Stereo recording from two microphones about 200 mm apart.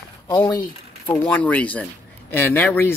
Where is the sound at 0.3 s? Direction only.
20° left (ahead or behind).